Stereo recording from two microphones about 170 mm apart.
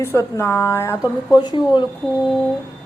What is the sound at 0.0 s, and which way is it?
A woman's voice, 15° left (ahead or behind).